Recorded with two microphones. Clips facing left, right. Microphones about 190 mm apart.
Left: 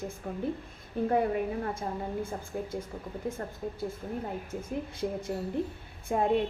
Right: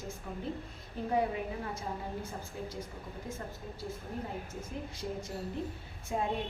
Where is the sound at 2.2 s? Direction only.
55° left (ahead or behind).